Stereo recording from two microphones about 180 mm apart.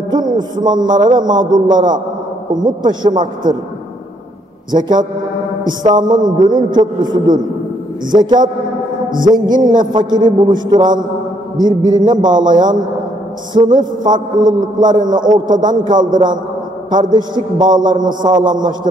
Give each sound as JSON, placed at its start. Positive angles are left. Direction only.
{"t": 0.1, "sound": "a man's voice", "side_deg": -25}
{"t": 2.9, "sound": "a man's voice", "side_deg": -25}
{"t": 4.6, "sound": "a man's voice", "side_deg": -25}
{"t": 5.6, "sound": "a sound", "side_deg": -25}
{"t": 6.0, "sound": "a man's voice", "side_deg": -25}
{"t": 13.5, "sound": "a man's voice", "side_deg": -25}
{"t": 17.7, "sound": "a man's voice", "side_deg": -45}
{"t": 18.0, "sound": "a man's voice", "side_deg": -25}